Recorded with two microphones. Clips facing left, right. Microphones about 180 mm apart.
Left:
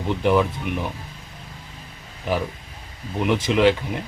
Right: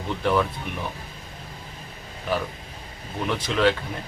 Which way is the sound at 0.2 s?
15° left (ahead or behind).